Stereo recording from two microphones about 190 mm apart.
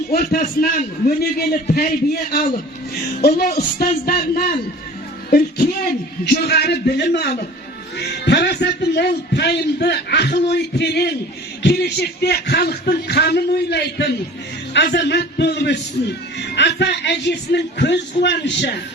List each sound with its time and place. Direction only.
0.1 s a man's voice: 50° left (ahead or behind)
3.2 s a man's voice: 55° left (ahead or behind)